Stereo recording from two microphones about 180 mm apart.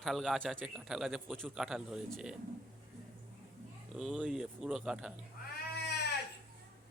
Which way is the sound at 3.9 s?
5° right (ahead or behind).